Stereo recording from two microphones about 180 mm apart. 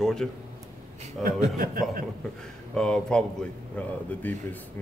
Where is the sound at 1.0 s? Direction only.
40° right (ahead or behind).